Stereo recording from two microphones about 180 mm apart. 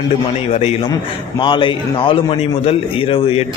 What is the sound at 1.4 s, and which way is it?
A man's voice, 25° left (ahead or behind).